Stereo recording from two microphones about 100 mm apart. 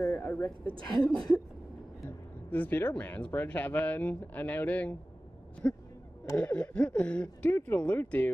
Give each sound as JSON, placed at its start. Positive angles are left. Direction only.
{"t": 0.0, "sound": "speech", "side_deg": 25}
{"t": 0.7, "sound": "speech", "side_deg": 5}
{"t": 2.0, "sound": "speech", "side_deg": 20}